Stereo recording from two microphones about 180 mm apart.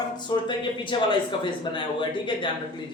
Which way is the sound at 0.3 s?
25° left (ahead or behind).